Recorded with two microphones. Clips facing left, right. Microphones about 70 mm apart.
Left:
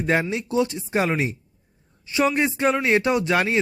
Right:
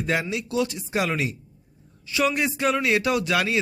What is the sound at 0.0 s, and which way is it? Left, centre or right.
A man's voice, left.